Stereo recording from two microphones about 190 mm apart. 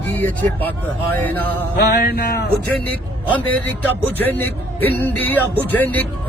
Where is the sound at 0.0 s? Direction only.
10° left (ahead or behind).